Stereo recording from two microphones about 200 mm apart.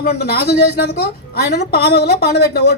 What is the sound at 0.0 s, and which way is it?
A woman's voice, 50° left (ahead or behind).